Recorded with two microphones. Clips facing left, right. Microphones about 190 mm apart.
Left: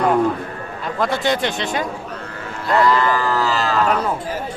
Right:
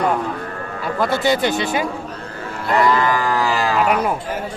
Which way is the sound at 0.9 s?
5° right (ahead or behind).